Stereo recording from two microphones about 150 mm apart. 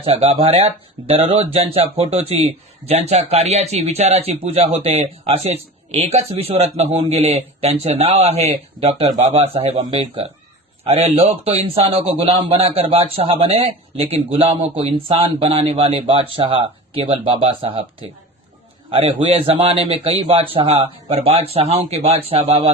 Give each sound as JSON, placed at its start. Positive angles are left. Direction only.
{"t": 0.0, "sound": "a man's voice", "side_deg": -40}
{"t": 18.9, "sound": "a man's voice", "side_deg": -40}
{"t": 21.1, "sound": "speech", "side_deg": -45}